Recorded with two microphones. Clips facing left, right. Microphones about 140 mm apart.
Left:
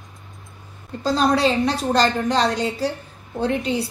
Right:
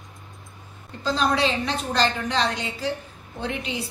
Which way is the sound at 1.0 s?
40° left (ahead or behind).